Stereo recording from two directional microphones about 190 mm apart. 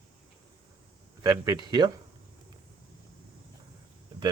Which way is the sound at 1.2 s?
20° right (ahead or behind).